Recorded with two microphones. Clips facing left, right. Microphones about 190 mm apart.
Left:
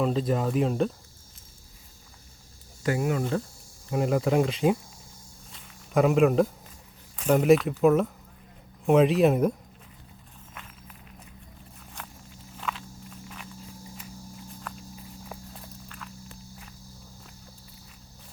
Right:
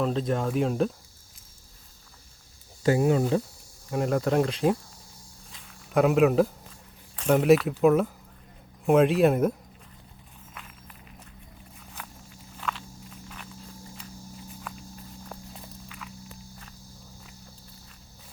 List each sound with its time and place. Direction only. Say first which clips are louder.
0.0 s speech: left 1 dB; centre (ahead or behind)
2.8 s speech: right 4 dB; 30° right (ahead or behind)
3.8 s speech: left 1 dB; centre (ahead or behind)
5.5 s a sound: even; centre (ahead or behind)
7.2 s speech: even; centre (ahead or behind)
10.5 s walk: left 1 dB; centre (ahead or behind)